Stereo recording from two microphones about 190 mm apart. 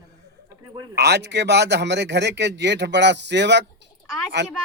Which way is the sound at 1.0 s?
65° right (ahead or behind).